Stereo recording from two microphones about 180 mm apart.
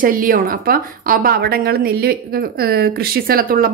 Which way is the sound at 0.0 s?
50° right (ahead or behind).